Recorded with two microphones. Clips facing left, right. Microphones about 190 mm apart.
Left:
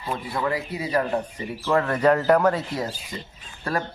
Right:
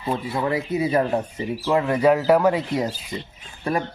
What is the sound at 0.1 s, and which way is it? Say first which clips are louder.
Speech: right 3 dB; 25° right (ahead or behind).